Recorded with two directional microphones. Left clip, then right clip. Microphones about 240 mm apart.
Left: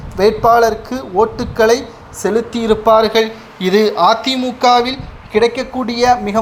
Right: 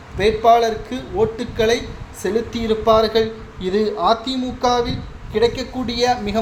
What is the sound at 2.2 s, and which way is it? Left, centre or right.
A man's voice, centre.